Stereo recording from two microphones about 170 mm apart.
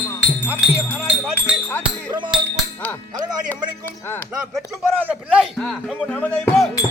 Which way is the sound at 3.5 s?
10° left (ahead or behind).